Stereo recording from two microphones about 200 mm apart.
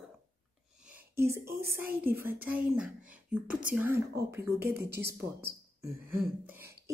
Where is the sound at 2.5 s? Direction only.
5° right (ahead or behind).